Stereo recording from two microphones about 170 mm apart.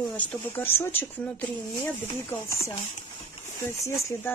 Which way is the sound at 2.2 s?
15° left (ahead or behind).